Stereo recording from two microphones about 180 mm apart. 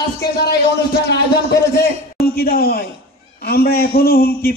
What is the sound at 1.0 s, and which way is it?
A man's voice, 65° left (ahead or behind).